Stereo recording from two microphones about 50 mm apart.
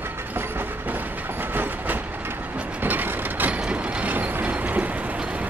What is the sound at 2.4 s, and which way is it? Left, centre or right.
Mechanisms, right.